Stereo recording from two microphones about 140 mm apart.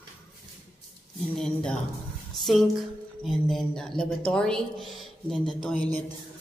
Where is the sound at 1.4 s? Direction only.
5° left (ahead or behind).